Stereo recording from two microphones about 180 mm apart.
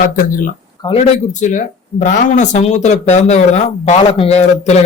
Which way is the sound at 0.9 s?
40° left (ahead or behind).